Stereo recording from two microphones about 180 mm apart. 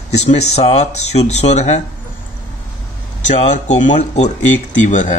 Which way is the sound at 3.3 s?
40° left (ahead or behind).